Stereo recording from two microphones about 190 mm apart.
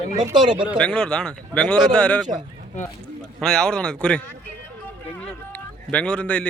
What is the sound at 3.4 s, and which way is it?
Speech, 5° left (ahead or behind).